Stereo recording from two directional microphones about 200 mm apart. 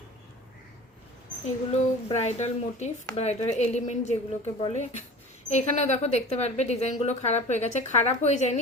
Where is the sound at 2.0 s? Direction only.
35° left (ahead or behind).